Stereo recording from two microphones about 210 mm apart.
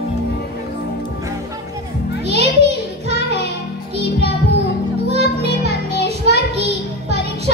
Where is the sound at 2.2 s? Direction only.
30° right (ahead or behind).